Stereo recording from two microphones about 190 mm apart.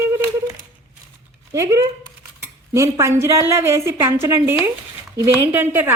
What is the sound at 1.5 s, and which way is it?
A woman's voice, 15° right (ahead or behind).